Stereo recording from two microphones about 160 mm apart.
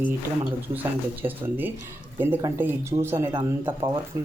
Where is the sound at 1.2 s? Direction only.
10° right (ahead or behind).